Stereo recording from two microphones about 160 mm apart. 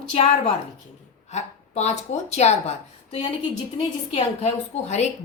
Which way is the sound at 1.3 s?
45° left (ahead or behind).